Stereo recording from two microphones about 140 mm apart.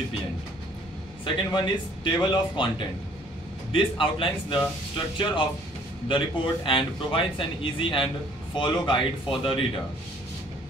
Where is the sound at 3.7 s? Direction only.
40° left (ahead or behind).